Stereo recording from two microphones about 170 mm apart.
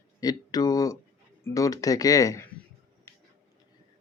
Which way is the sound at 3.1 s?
15° left (ahead or behind).